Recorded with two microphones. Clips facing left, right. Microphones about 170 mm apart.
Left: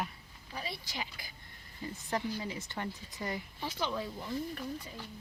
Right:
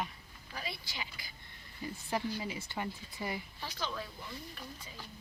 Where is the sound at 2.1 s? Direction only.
15° right (ahead or behind).